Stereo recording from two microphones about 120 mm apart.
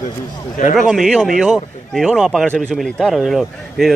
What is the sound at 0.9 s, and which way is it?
Speech, centre (ahead or behind).